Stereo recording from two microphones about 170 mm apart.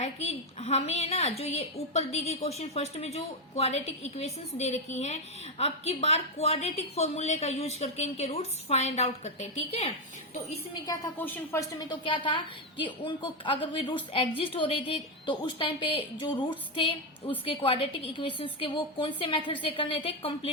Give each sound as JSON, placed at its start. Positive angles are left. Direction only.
{"t": 0.0, "sound": "a woman's voice", "side_deg": 40}
{"t": 10.8, "sound": "a woman's voice", "side_deg": 15}